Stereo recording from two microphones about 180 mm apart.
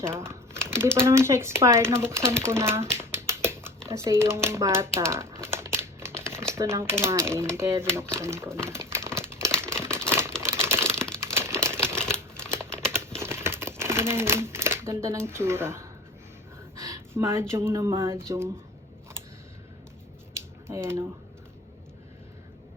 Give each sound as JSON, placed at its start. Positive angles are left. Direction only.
{"t": 0.0, "sound": "crumpling", "side_deg": -15}
{"t": 0.9, "sound": "speech", "side_deg": -15}
{"t": 2.5, "sound": "a sound", "side_deg": -15}
{"t": 3.8, "sound": "speech", "side_deg": -15}
{"t": 4.9, "sound": "crumpling", "side_deg": -15}
{"t": 6.5, "sound": "speech", "side_deg": -15}
{"t": 8.7, "sound": "crumpling", "side_deg": -15}
{"t": 10.4, "sound": "typewriter", "side_deg": -15}
{"t": 11.3, "sound": "crumpling", "side_deg": -15}
{"t": 12.4, "sound": "typing", "side_deg": -15}
{"t": 12.9, "sound": "a sound", "side_deg": -15}
{"t": 16.7, "sound": "speech", "side_deg": -20}
{"t": 20.3, "sound": "a sound", "side_deg": -15}